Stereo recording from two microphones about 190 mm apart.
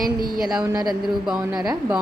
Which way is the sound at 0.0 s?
50° right (ahead or behind).